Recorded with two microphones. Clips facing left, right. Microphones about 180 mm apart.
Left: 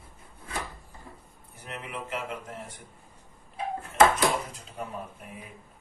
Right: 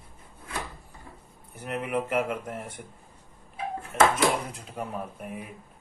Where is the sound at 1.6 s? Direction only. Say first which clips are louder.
Right 9 dB; 55° right (ahead or behind).